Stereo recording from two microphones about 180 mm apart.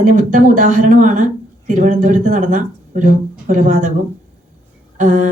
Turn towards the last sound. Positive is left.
turn(degrees=-45)  # may be behind; listen again after turning